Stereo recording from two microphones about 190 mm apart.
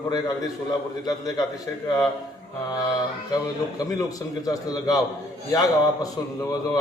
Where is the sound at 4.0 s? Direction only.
20° left (ahead or behind).